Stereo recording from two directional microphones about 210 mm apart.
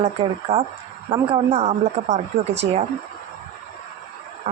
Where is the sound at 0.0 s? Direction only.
25° right (ahead or behind).